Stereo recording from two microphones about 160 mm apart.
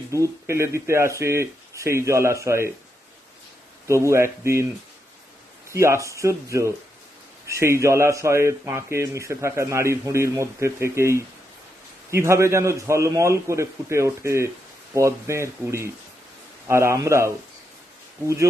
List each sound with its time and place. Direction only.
0.1 s a man's voice: 20° right (ahead or behind)
3.8 s a man's voice: 15° right (ahead or behind)
5.7 s a man's voice: 15° right (ahead or behind)